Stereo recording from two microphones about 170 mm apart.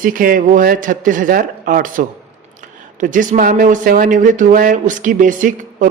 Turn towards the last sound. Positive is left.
turn(degrees=-50)  # may be behind; listen again after turning